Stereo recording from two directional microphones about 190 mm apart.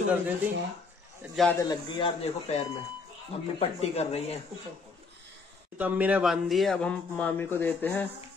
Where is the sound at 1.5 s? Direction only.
20° left (ahead or behind).